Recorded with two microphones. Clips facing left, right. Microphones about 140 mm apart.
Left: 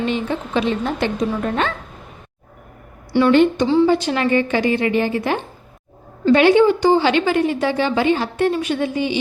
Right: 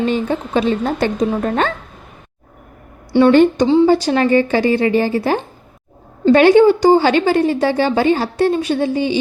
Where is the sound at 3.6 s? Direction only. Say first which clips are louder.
Right 3 dB; 25° right (ahead or behind).